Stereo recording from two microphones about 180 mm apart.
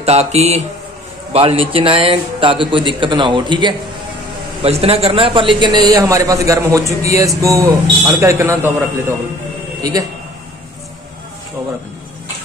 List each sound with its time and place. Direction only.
0.0 s mantra: 35° right (ahead or behind)
1.3 s a man's voice: 30° right (ahead or behind); by 8.7 s 15° right (ahead or behind)
9.8 s a man's voice: 20° right (ahead or behind)